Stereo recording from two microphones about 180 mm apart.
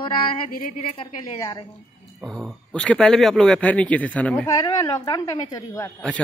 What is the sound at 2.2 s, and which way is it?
Speech, centre (ahead or behind).